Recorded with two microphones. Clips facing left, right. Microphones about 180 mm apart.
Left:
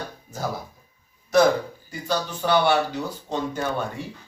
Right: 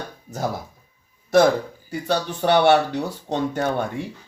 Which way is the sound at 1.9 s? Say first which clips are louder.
Right 4 dB; 65° right (ahead or behind).